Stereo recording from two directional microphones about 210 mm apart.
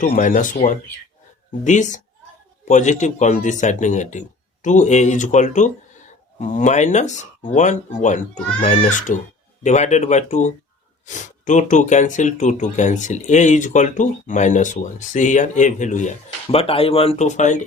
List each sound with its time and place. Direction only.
0.0 s speech: 40° left (ahead or behind)